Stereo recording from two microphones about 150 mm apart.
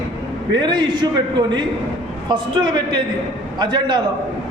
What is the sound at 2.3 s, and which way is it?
A man's voice, 30° right (ahead or behind).